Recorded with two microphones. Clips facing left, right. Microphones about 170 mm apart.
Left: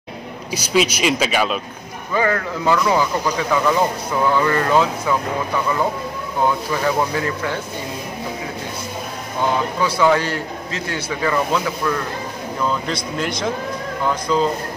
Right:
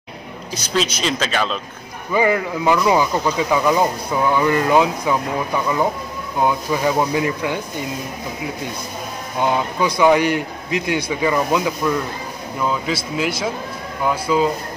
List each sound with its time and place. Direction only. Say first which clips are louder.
0.5 s speech: left 3 dB; 10° left (ahead or behind)
2.1 s a man's voice: right 2 dB; 15° right (ahead or behind)
9.4 s a man's voice: right 1 dB; 15° right (ahead or behind)